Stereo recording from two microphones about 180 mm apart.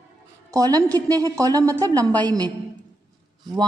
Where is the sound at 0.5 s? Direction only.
20° right (ahead or behind).